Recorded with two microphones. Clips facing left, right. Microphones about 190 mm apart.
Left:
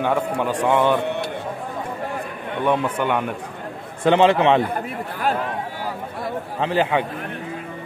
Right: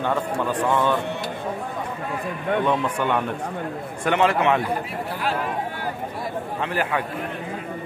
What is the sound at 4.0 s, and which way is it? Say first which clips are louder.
Speech: left 5 dB; 25° left (ahead or behind).